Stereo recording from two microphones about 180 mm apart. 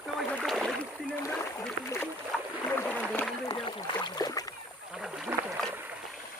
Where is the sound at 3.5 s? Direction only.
25° left (ahead or behind).